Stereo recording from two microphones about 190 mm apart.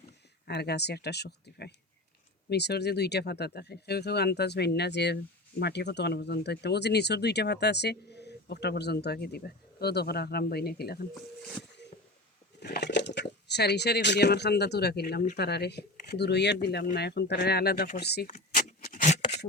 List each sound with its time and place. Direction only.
0.4 s speech: 60° left (ahead or behind)
12.5 s speech: 60° left (ahead or behind)
18.3 s a sound: 45° left (ahead or behind)